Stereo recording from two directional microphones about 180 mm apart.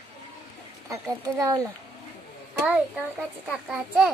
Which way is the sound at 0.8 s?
15° right (ahead or behind).